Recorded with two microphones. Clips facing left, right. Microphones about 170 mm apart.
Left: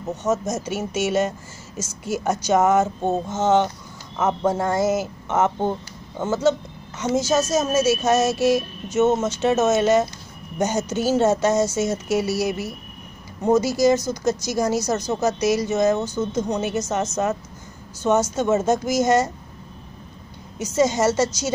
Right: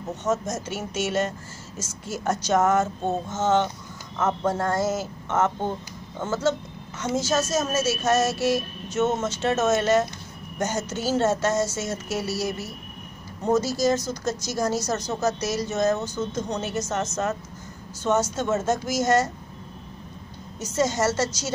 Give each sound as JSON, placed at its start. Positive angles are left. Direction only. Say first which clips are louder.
{"t": 0.2, "sound": "speech", "louder": "left 3 dB", "side_deg": 15}
{"t": 20.5, "sound": "speech", "louder": "left 4 dB", "side_deg": 10}